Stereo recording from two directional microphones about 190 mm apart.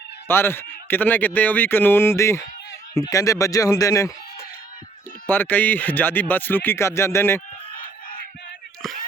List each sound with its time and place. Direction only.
0.3 s speech: 10° left (ahead or behind)
5.2 s speech: 10° left (ahead or behind)